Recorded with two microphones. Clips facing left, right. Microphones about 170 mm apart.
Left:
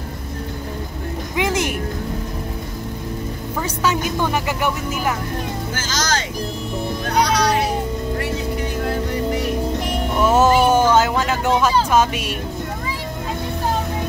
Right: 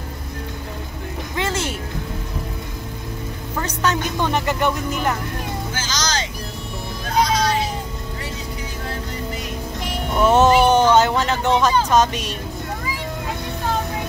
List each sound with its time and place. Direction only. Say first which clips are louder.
1.3 s speech: left 4 dB; 15° left (ahead or behind)
3.5 s speech: left 1 dB; 10° left (ahead or behind)
5.8 s speech: left 3 dB; 50° left (ahead or behind)
7.2 s music: left 1 dB; 65° left (ahead or behind)
8.8 s music: left 7 dB; 60° left (ahead or behind)
10.1 s a sound: right 1 dB; 5° left (ahead or behind)
11.9 s speech: even; 10° left (ahead or behind)